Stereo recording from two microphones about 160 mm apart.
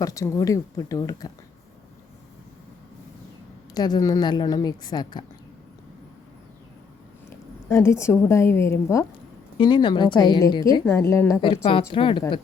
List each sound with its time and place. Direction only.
0.0 s a woman's voice: 20° left (ahead or behind)
3.8 s a woman's voice: 25° left (ahead or behind)
7.7 s a woman's voice: 15° left (ahead or behind)
9.6 s a woman's voice: 30° left (ahead or behind)
11.6 s a woman's voice: 40° left (ahead or behind)